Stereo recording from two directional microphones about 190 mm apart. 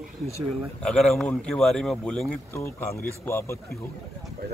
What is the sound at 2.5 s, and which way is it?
Speech, 15° left (ahead or behind).